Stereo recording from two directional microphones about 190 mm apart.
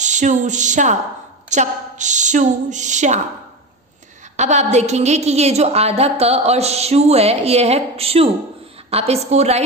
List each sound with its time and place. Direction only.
0.0 s a sound: 40° right (ahead or behind)
1.5 s a woman's voice: 40° right (ahead or behind)
4.4 s a woman's voice: 35° right (ahead or behind)